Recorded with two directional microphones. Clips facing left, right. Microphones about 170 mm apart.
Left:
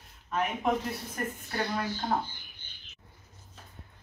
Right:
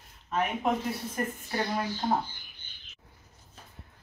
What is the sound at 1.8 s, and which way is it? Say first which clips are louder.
Speech: right 2 dB; 15° right (ahead or behind).